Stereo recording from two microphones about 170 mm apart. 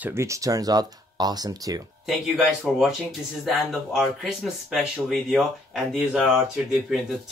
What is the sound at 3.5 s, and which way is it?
Speech, centre (ahead or behind).